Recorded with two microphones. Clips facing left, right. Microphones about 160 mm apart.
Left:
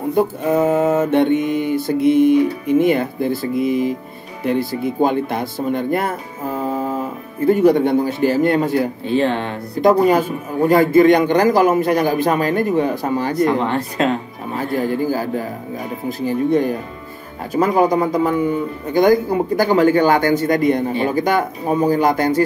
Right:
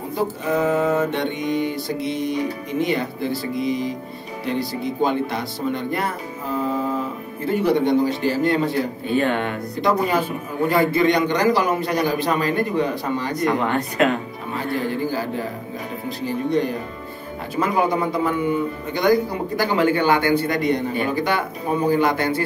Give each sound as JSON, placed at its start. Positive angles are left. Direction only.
{"t": 0.1, "sound": "mantra", "side_deg": 50}
{"t": 7.4, "sound": "mantra", "side_deg": 50}
{"t": 9.0, "sound": "speech", "side_deg": 30}
{"t": 9.8, "sound": "mantra", "side_deg": 50}
{"t": 13.3, "sound": "speech", "side_deg": 30}
{"t": 14.8, "sound": "mantra", "side_deg": 45}
{"t": 17.5, "sound": "speech", "side_deg": 40}
{"t": 18.9, "sound": "mantra", "side_deg": 45}